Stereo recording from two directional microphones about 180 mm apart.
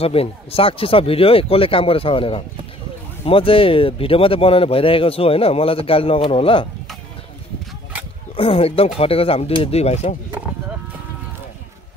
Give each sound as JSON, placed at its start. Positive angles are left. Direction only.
{"t": 0.0, "sound": "speech", "side_deg": 35}
{"t": 8.4, "sound": "speech", "side_deg": 30}